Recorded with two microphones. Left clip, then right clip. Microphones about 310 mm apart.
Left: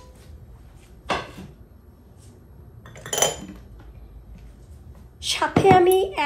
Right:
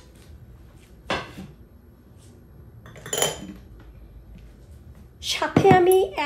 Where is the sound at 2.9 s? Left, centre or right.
Centre.